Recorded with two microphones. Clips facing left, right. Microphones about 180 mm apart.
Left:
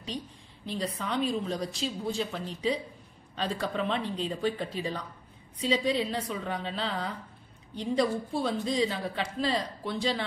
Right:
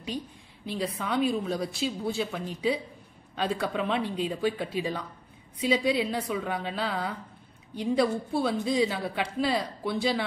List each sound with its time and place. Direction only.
0.7 s a woman's voice: 5° right (ahead or behind)